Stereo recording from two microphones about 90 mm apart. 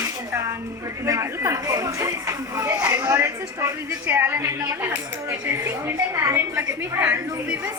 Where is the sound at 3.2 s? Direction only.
35° right (ahead or behind).